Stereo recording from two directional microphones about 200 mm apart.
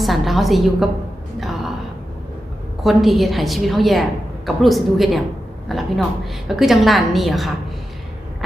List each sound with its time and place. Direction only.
0.0 s a woman's voice: centre (ahead or behind)
1.4 s gasp: centre (ahead or behind)
2.8 s a woman's voice: centre (ahead or behind)